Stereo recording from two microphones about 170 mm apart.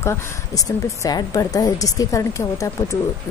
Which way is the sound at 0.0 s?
20° left (ahead or behind).